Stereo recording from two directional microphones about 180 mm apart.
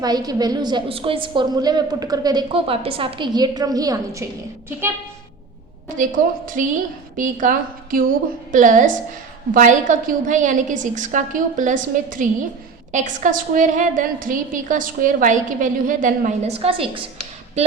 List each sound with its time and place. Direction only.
0.0 s a woman's voice: 20° right (ahead or behind)
6.0 s a woman's voice: 45° right (ahead or behind); by 17.1 s 30° right (ahead or behind)